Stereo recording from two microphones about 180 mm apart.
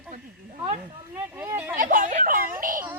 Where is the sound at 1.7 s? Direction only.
50° right (ahead or behind).